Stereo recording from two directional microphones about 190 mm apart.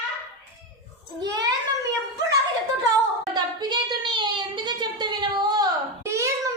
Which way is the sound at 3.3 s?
20° right (ahead or behind).